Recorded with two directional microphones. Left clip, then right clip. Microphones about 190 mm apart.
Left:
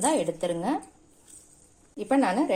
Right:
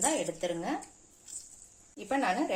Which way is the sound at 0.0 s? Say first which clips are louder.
Left 6 dB; 40° left (ahead or behind).